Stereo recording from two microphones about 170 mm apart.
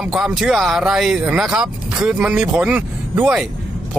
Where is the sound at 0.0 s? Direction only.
5° right (ahead or behind).